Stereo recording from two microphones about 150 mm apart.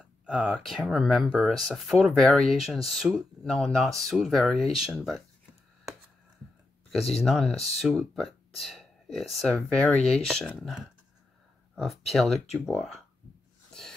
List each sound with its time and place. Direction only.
0.0 s speech: 5° right (ahead or behind)
6.9 s speech: centre (ahead or behind)
9.9 s speech: 45° left (ahead or behind)
10.2 s speech: 5° left (ahead or behind)
13.7 s a sound: 5° left (ahead or behind)